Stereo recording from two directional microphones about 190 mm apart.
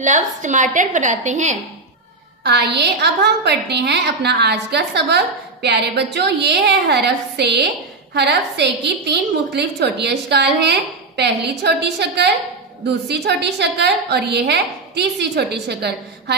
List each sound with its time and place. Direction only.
0.0 s a woman's voice: 40° right (ahead or behind)
2.4 s a woman's voice: 60° right (ahead or behind)